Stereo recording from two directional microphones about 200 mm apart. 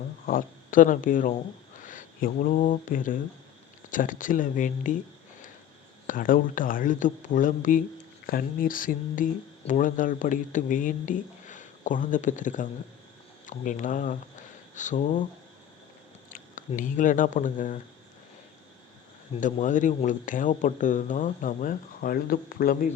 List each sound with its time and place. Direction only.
0.3 s speech: 45° left (ahead or behind)
6.1 s speech: 45° left (ahead or behind)
16.3 s speech: 40° left (ahead or behind)
19.4 s speech: 40° left (ahead or behind)